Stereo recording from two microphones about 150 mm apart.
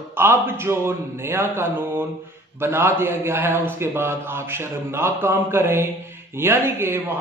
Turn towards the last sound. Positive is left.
turn(degrees=-15)  # may be behind; listen again after turning